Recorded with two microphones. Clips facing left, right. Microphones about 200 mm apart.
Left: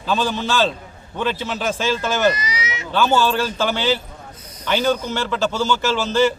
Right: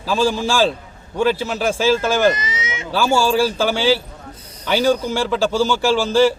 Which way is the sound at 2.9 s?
10° right (ahead or behind).